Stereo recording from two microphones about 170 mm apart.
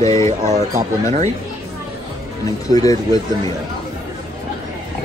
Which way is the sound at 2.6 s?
20° left (ahead or behind).